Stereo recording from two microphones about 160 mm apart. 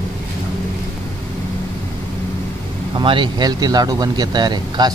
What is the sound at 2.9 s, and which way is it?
Speech, 30° right (ahead or behind).